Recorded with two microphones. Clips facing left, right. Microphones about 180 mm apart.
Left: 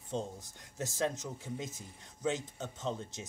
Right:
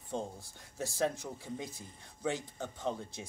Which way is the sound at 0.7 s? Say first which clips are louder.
Right 1 dB; 20° left (ahead or behind).